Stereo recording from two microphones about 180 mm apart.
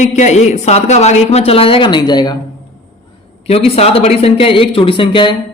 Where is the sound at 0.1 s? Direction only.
40° left (ahead or behind); by 2.4 s 25° left (ahead or behind).